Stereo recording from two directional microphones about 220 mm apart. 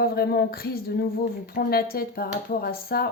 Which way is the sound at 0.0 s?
45° left (ahead or behind).